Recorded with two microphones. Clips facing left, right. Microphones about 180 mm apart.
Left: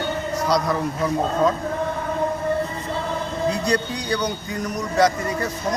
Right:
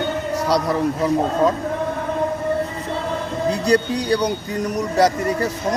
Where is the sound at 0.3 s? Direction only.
30° right (ahead or behind).